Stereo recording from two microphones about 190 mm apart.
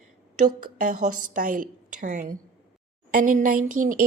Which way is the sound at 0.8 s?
40° right (ahead or behind).